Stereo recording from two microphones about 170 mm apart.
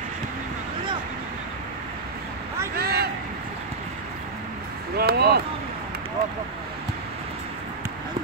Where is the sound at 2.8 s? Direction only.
65° right (ahead or behind).